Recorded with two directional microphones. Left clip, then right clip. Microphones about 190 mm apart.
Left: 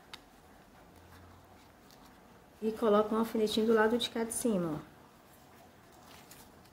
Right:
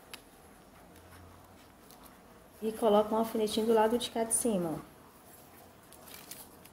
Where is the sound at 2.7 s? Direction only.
25° left (ahead or behind).